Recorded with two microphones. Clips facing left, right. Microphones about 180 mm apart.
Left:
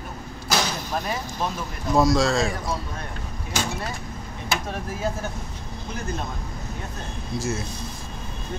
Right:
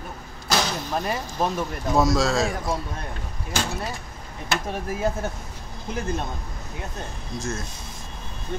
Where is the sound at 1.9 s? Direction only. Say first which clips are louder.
Left 2 dB; centre (ahead or behind).